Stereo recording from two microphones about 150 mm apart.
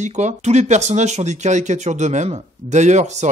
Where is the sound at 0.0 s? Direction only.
50° right (ahead or behind).